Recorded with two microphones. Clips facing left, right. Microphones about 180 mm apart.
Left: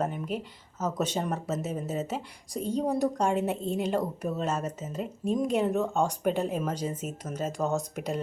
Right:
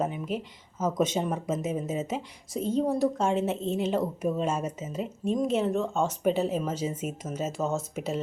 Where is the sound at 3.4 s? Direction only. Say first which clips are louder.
Right 1 dB; 10° left (ahead or behind).